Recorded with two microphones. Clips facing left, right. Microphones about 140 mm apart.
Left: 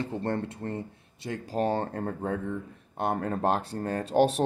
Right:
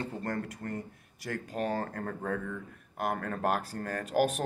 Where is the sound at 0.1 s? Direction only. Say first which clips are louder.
Left 5 dB; 30° left (ahead or behind).